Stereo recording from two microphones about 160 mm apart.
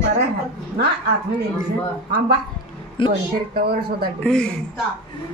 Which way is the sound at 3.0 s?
30° left (ahead or behind).